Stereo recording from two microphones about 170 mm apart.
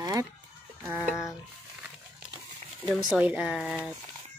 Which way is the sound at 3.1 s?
5° right (ahead or behind).